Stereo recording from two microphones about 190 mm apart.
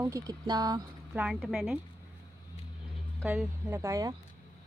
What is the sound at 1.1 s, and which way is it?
Speech, 5° right (ahead or behind).